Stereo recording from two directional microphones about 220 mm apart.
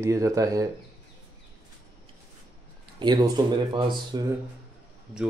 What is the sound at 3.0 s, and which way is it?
Speech, 20° right (ahead or behind).